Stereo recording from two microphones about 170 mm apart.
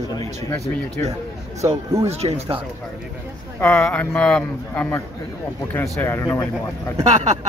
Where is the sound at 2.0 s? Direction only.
40° right (ahead or behind).